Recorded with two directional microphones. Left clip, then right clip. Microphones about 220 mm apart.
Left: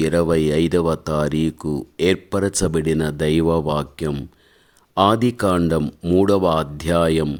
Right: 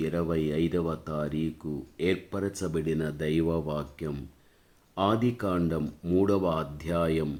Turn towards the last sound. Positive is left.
turn(degrees=45)  # may be behind; listen again after turning